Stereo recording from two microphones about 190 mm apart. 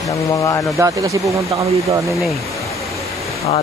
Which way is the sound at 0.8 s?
15° right (ahead or behind).